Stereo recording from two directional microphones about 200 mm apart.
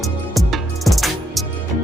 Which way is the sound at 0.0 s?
Centre (ahead or behind).